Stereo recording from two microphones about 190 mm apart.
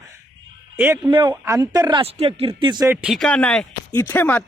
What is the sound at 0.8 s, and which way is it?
Speech, 10° right (ahead or behind).